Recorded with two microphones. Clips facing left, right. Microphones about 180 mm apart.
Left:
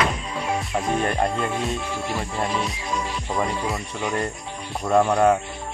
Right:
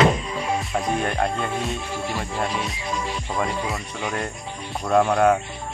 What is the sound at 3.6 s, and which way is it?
Music, centre (ahead or behind).